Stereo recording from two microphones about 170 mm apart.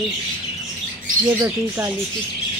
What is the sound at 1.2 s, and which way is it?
Speech, 10° right (ahead or behind).